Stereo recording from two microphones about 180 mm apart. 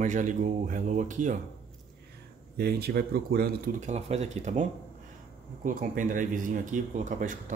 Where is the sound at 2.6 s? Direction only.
60° right (ahead or behind).